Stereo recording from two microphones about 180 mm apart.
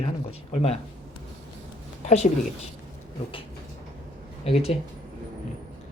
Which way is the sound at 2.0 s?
40° left (ahead or behind).